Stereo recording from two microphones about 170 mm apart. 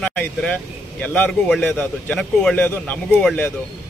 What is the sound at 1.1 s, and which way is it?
A man's voice, 5° left (ahead or behind).